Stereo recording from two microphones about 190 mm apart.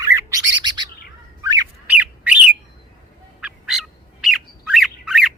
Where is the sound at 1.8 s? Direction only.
10° right (ahead or behind).